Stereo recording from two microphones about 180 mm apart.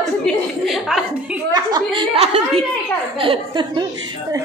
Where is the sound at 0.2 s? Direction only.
Centre (ahead or behind).